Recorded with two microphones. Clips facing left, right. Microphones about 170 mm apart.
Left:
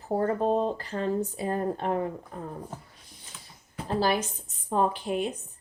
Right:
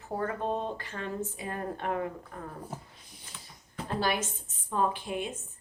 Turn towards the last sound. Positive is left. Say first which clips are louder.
# left 4 dB
turn(degrees=40)  # may be behind; listen again after turning